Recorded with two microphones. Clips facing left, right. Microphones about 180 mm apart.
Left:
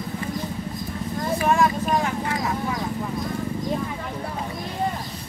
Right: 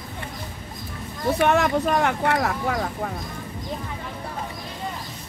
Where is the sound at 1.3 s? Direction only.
70° right (ahead or behind).